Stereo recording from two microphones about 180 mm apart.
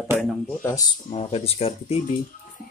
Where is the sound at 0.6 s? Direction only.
20° left (ahead or behind).